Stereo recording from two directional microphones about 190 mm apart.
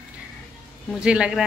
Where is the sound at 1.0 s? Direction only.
5° right (ahead or behind).